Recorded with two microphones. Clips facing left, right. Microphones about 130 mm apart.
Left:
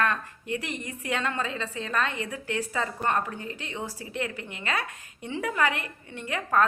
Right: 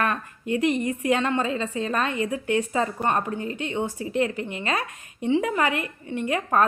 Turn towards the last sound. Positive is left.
turn(degrees=-25)  # may be behind; listen again after turning